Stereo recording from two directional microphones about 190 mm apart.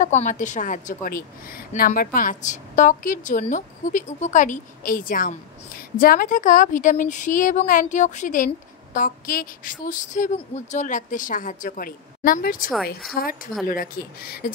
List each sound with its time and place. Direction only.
0.0 s a woman's voice: 40° left (ahead or behind)